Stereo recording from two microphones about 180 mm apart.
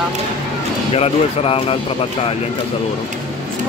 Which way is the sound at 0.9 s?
30° left (ahead or behind).